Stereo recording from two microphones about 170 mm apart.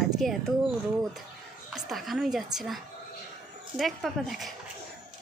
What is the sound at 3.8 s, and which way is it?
Speech, centre (ahead or behind).